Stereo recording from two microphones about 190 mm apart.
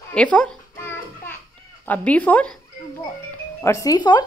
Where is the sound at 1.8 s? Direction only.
10° left (ahead or behind).